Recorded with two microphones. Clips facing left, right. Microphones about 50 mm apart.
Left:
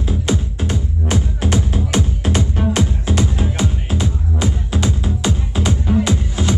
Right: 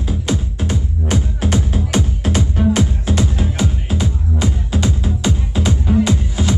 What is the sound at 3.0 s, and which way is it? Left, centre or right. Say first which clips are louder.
Music: even; centre.